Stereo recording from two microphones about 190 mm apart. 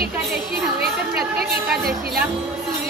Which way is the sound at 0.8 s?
55° right (ahead or behind).